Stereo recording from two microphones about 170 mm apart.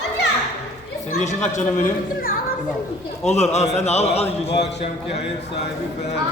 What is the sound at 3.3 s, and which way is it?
A man's voice, 40° left (ahead or behind).